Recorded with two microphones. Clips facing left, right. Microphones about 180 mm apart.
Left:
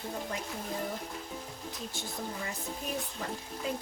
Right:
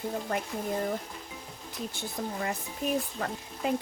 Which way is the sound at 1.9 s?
60° right (ahead or behind).